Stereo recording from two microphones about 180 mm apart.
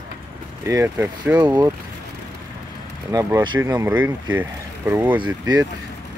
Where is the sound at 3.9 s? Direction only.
10° right (ahead or behind).